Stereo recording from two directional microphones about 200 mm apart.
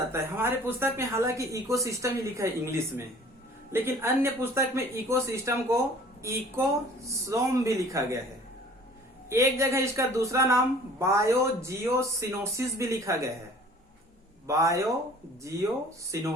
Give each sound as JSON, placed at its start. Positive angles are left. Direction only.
{"t": 0.1, "sound": "speech", "side_deg": -10}
{"t": 9.3, "sound": "speech", "side_deg": -15}
{"t": 14.4, "sound": "speech", "side_deg": -15}